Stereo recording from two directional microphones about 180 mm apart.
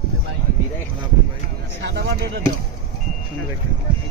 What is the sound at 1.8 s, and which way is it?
Speech, 75° right (ahead or behind).